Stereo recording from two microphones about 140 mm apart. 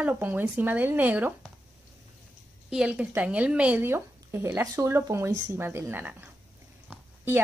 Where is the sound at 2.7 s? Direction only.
5° right (ahead or behind).